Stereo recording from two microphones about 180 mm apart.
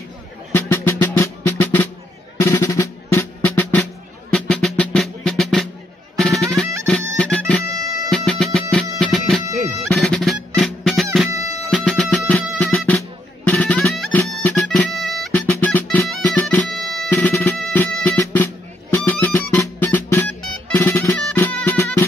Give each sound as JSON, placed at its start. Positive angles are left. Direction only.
{"t": 0.5, "sound": "music", "side_deg": 10}
{"t": 2.4, "sound": "percussion", "side_deg": 15}
{"t": 4.3, "sound": "music", "side_deg": 5}
{"t": 7.6, "sound": "music", "side_deg": -20}
{"t": 8.3, "sound": "music", "side_deg": 0}
{"t": 9.0, "sound": "bagpipes", "side_deg": 0}
{"t": 9.8, "sound": "music", "side_deg": 5}
{"t": 16.6, "sound": "music", "side_deg": 0}
{"t": 17.1, "sound": "music", "side_deg": 10}